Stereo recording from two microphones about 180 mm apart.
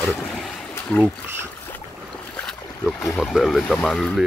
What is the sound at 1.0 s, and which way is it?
Speech, 10° right (ahead or behind).